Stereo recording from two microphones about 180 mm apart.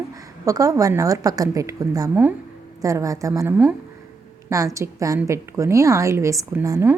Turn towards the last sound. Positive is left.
turn(degrees=-15)  # may be behind; listen again after turning